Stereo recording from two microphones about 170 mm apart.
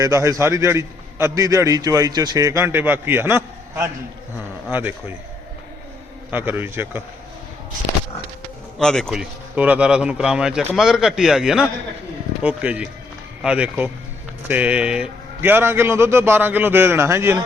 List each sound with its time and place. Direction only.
0.0 s a man's voice: 20° right (ahead or behind)
6.3 s a man's voice: 10° right (ahead or behind)
8.8 s speech: 5° left (ahead or behind)
9.6 s a man's voice: 10° right (ahead or behind)